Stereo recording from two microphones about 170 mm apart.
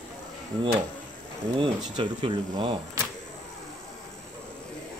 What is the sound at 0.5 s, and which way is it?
Speech, 25° right (ahead or behind).